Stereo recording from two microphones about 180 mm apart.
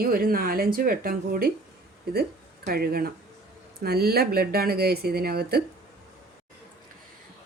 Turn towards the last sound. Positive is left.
turn(degrees=-60)  # may be behind; listen again after turning